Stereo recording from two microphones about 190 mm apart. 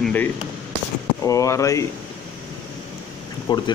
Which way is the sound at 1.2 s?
15° left (ahead or behind).